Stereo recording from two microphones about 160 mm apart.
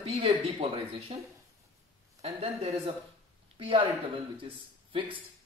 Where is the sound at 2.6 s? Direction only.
40° right (ahead or behind).